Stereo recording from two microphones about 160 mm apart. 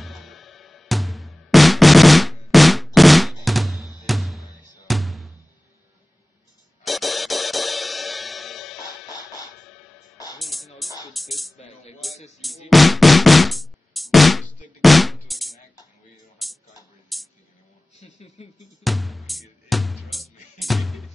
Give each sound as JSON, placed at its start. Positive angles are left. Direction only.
{"t": 0.0, "sound": "music", "side_deg": 0}
{"t": 6.8, "sound": "music", "side_deg": 0}
{"t": 10.4, "sound": "music", "side_deg": 0}
{"t": 11.5, "sound": "music", "side_deg": 40}
{"t": 12.6, "sound": "music", "side_deg": 0}
{"t": 16.4, "sound": "a sound", "side_deg": 0}
{"t": 18.0, "sound": "speech", "side_deg": 45}
{"t": 18.9, "sound": "music", "side_deg": 0}